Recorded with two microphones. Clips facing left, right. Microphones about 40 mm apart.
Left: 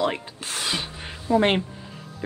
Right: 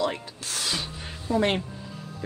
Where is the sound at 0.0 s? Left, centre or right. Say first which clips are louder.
Left 3 dB; left.